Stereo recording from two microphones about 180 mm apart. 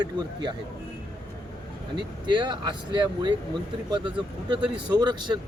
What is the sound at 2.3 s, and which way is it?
Speech, 25° right (ahead or behind).